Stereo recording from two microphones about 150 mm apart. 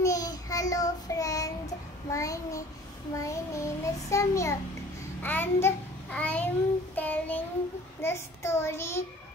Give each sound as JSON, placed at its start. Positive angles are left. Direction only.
{"t": 0.0, "sound": "child singing", "side_deg": 25}
{"t": 5.2, "sound": "a child's voice", "side_deg": 10}
{"t": 7.0, "sound": "child singing", "side_deg": 10}